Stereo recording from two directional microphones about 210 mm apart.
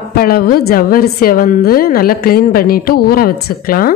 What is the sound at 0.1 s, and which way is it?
A woman's voice, 45° left (ahead or behind).